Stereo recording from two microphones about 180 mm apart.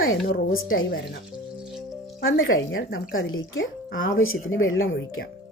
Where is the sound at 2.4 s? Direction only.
90° left.